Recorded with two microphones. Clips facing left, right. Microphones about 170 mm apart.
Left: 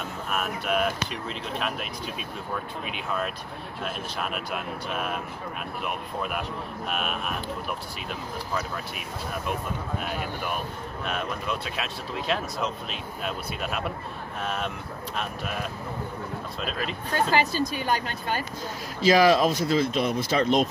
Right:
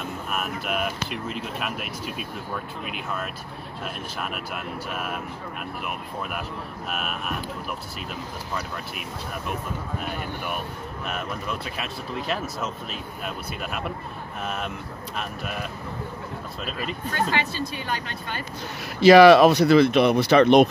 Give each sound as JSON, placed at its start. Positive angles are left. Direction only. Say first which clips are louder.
{"t": 0.3, "sound": "speech", "louder": "left 2 dB", "side_deg": -5}
{"t": 3.8, "sound": "speech", "louder": "left 1 dB", "side_deg": -5}
{"t": 6.9, "sound": "speech", "louder": "even", "side_deg": 0}
{"t": 11.1, "sound": "speech", "louder": "left 1 dB", "side_deg": -5}
{"t": 16.6, "sound": "speech", "louder": "even", "side_deg": -5}
{"t": 17.3, "sound": "a woman's voice", "louder": "left 3 dB", "side_deg": 40}
{"t": 18.9, "sound": "speech", "louder": "right 8 dB", "side_deg": -70}